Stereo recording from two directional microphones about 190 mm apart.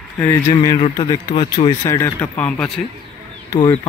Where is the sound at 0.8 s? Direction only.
20° left (ahead or behind).